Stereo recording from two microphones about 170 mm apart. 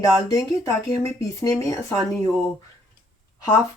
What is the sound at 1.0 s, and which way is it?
Speech, 20° left (ahead or behind).